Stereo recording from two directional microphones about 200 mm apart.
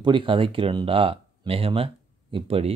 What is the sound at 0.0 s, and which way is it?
Speech, 25° right (ahead or behind).